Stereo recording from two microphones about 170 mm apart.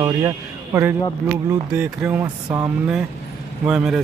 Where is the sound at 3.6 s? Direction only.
5° right (ahead or behind).